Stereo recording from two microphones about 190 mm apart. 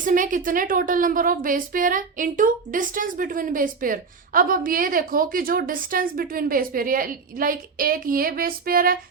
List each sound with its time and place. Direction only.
0.0 s a woman's voice: 45° right (ahead or behind)